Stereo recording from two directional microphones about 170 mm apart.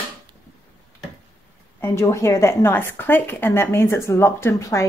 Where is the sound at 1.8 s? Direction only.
15° left (ahead or behind).